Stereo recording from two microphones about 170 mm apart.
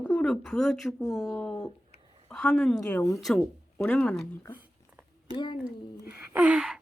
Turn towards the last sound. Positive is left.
turn(degrees=-5)  # may be behind; listen again after turning